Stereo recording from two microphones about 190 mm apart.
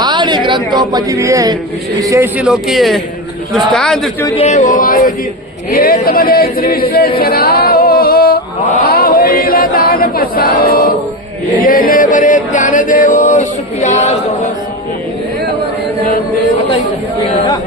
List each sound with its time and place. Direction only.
0.0 s a man's voice: 25° right (ahead or behind)
2.4 s speech: centre (ahead or behind)
4.4 s speech: 40° left (ahead or behind)
7.2 s female singing: 50° left (ahead or behind)
8.9 s a capella: 50° left (ahead or behind)
11.6 s a sound: 50° left (ahead or behind)